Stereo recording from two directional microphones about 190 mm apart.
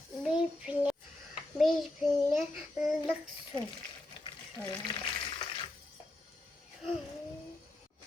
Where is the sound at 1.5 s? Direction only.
Centre (ahead or behind).